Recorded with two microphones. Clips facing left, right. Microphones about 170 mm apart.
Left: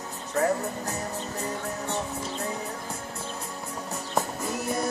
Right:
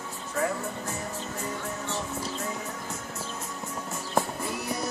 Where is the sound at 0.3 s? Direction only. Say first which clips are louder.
Left 4 dB; 40° left (ahead or behind).